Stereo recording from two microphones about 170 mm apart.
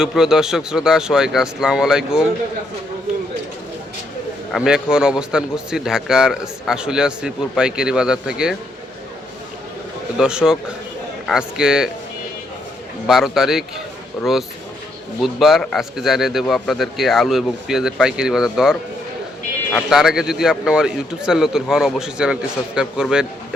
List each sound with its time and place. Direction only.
0.0 s a man's voice: 5° right (ahead or behind)
4.5 s a man's voice: 5° right (ahead or behind)
10.2 s a man's voice: 5° right (ahead or behind)
13.1 s a man's voice: centre (ahead or behind)
15.2 s a man's voice: centre (ahead or behind)